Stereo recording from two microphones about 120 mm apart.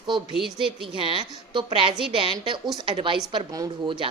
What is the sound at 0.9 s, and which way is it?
Speech, 45° right (ahead or behind).